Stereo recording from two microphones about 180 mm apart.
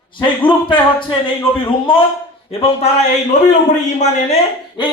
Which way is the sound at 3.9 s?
40° left (ahead or behind).